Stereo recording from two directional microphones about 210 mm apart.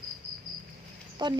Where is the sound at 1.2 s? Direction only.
20° right (ahead or behind).